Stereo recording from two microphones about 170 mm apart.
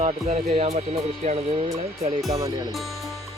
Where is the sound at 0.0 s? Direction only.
40° right (ahead or behind).